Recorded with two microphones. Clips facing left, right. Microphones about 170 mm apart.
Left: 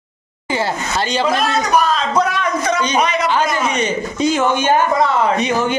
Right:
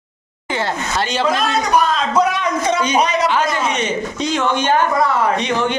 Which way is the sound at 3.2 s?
Centre (ahead or behind).